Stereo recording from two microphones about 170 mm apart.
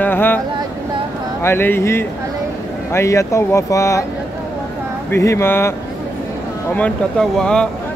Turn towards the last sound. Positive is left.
turn(degrees=5)  # may be behind; listen again after turning